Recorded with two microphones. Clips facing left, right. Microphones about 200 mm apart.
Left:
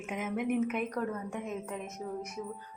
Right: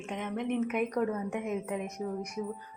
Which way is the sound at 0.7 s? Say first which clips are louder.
Right 3 dB; 10° right (ahead or behind).